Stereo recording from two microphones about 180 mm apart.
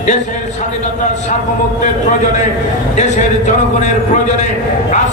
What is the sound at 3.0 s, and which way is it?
A man's voice, 40° left (ahead or behind).